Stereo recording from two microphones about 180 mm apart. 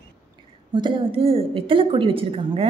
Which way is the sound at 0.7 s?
25° right (ahead or behind).